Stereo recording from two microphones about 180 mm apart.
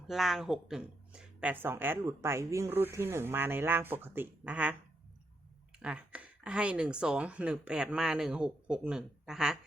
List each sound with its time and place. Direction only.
0.1 s speech: centre (ahead or behind)
5.8 s speech: 5° right (ahead or behind)